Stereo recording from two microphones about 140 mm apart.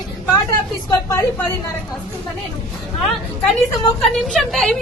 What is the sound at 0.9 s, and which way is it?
Speech, 25° left (ahead or behind).